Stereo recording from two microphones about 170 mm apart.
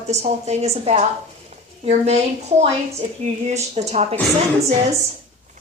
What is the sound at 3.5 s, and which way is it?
Speech, 40° right (ahead or behind).